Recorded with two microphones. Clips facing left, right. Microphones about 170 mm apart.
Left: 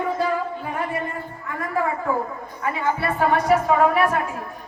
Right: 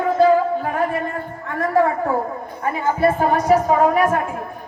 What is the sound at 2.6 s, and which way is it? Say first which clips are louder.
Speech: right 6 dB; 40° right (ahead or behind).